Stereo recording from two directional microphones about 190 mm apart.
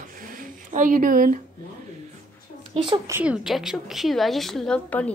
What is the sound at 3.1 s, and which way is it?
A woman's voice, 10° right (ahead or behind).